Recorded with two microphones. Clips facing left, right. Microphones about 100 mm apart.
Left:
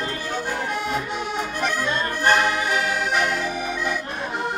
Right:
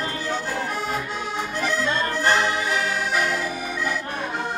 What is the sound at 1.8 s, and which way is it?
Music, 15° left (ahead or behind).